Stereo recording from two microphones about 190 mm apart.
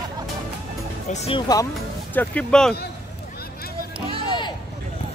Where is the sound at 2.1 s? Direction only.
10° left (ahead or behind).